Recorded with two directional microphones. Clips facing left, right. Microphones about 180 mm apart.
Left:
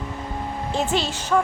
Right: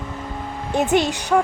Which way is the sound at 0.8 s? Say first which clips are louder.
Right 8 dB; 15° right (ahead or behind).